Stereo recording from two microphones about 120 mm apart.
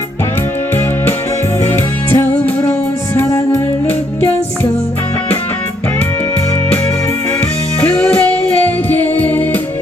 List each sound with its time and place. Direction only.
2.1 s music: 20° left (ahead or behind)
7.8 s music: 10° left (ahead or behind)